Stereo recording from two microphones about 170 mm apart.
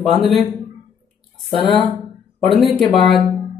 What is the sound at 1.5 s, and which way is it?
Speech, 30° left (ahead or behind).